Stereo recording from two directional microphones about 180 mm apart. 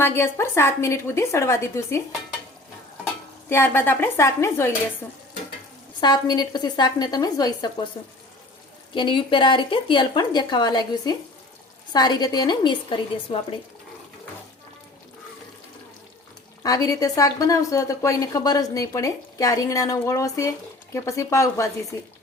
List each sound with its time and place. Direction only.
0.0 s a woman's voice: 15° left (ahead or behind)
3.5 s a woman's voice: 10° left (ahead or behind)
6.0 s speech: 25° left (ahead or behind)
9.0 s speech: 25° left (ahead or behind)
16.6 s a woman's voice: 20° left (ahead or behind)